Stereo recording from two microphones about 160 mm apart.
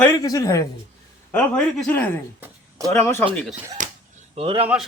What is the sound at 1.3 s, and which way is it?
Speech, 10° left (ahead or behind).